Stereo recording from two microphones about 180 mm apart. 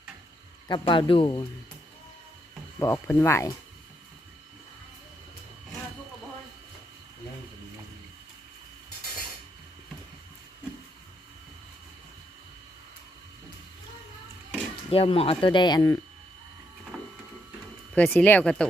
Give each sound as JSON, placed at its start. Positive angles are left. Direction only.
{"t": 0.7, "sound": "speech", "side_deg": 25}
{"t": 2.7, "sound": "speech", "side_deg": 15}
{"t": 14.8, "sound": "speech", "side_deg": 30}
{"t": 17.9, "sound": "speech", "side_deg": 10}